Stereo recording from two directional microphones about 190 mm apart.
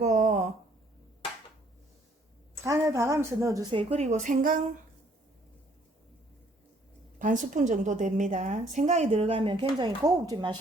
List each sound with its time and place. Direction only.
0.0 s a sound: 40° right (ahead or behind)
2.6 s a woman's voice: 15° right (ahead or behind); by 4.8 s 45° right (ahead or behind)
7.2 s a woman's voice: 40° right (ahead or behind); by 10.6 s 25° right (ahead or behind)